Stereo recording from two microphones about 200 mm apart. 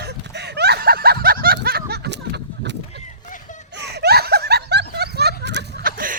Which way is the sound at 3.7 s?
55° right (ahead or behind).